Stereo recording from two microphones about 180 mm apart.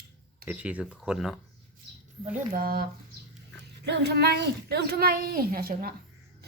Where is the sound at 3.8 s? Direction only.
70° right (ahead or behind).